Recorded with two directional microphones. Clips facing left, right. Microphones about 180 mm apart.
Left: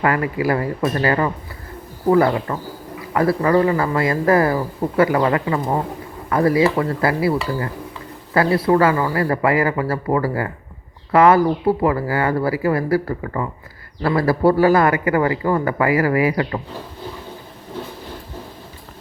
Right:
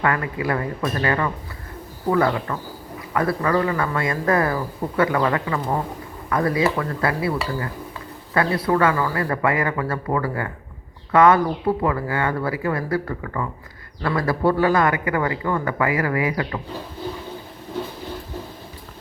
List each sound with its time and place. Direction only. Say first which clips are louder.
0.0 s a man's voice: left 4 dB; 30° left (ahead or behind)